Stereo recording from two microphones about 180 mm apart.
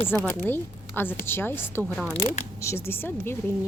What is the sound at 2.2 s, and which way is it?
Speech, 35° left (ahead or behind).